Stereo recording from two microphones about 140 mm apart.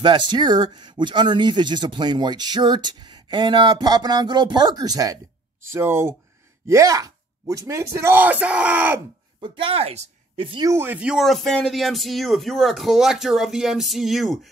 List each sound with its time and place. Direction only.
0.0 s speech: 35° right (ahead or behind); by 9.0 s 10° right (ahead or behind)
9.4 s speech: 40° right (ahead or behind)
10.7 s speech: 15° right (ahead or behind)